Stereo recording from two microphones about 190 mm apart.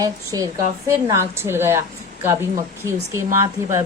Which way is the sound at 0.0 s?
20° right (ahead or behind).